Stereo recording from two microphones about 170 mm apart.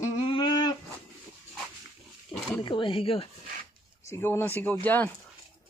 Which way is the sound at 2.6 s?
30° left (ahead or behind).